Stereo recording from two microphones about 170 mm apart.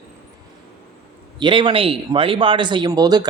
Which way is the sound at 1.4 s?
30° right (ahead or behind).